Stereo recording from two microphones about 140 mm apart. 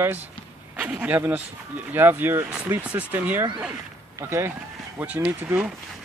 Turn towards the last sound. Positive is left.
turn(degrees=-15)  # may be behind; listen again after turning